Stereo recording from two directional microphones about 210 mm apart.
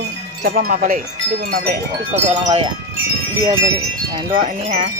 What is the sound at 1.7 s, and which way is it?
Speech, 30° right (ahead or behind).